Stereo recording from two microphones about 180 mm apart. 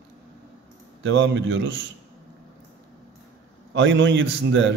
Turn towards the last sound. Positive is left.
turn(degrees=-90)